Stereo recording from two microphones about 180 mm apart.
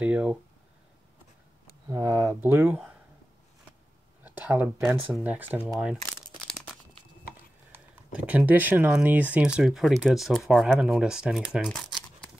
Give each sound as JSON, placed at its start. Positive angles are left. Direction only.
{"t": 0.0, "sound": "speech", "side_deg": -5}
{"t": 1.9, "sound": "speech", "side_deg": -20}
{"t": 4.2, "sound": "speech", "side_deg": -10}
{"t": 7.7, "sound": "speech", "side_deg": -10}